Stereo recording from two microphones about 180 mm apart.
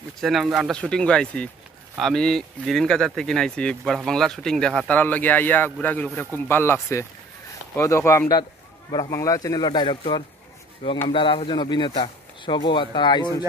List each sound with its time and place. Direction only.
0.2 s speech: centre (ahead or behind); by 13.4 s 25° left (ahead or behind)